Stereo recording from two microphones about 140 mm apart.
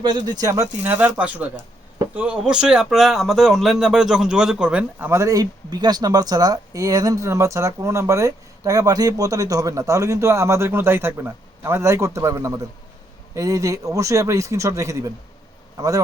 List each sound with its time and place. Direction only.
0.0 s speech: 30° right (ahead or behind)